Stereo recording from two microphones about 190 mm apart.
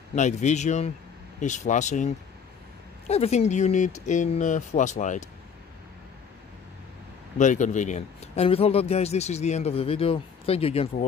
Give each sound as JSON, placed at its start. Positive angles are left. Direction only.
{"t": 0.1, "sound": "speech", "side_deg": 40}
{"t": 7.3, "sound": "speech", "side_deg": 40}